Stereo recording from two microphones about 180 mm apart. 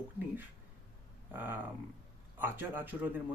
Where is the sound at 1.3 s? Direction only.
10° right (ahead or behind).